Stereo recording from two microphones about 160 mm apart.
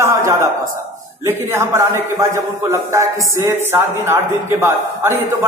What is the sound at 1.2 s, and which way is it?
A man's voice, 15° right (ahead or behind).